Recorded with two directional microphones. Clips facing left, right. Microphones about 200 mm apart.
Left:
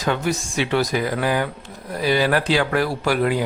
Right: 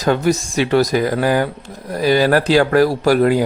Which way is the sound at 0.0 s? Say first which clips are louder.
Right 6 dB; 40° right (ahead or behind).